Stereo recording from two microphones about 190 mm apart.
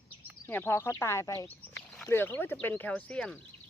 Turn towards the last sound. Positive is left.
turn(degrees=5)  # may be behind; listen again after turning